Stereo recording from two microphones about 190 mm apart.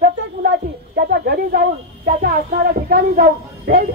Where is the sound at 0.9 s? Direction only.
55° right (ahead or behind).